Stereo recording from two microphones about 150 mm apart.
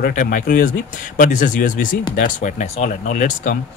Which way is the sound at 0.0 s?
65° left (ahead or behind).